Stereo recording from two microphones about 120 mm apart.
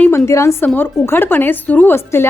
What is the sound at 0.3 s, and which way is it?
A woman's voice, 25° left (ahead or behind).